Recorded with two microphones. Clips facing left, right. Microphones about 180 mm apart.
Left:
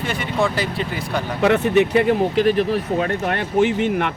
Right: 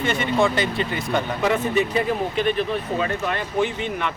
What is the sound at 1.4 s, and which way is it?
Speech, 65° left (ahead or behind).